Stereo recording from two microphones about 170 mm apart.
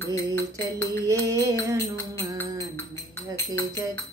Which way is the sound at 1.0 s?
20° right (ahead or behind).